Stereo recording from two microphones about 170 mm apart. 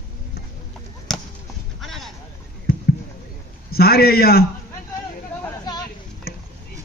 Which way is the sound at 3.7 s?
65° left (ahead or behind).